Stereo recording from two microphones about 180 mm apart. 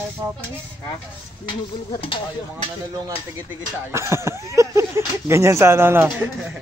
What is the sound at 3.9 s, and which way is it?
Speech, 15° right (ahead or behind).